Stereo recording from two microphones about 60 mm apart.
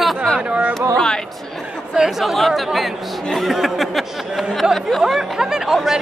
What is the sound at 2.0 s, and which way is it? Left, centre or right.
Speech, centre.